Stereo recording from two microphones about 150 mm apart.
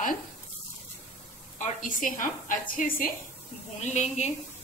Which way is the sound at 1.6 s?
60° left (ahead or behind).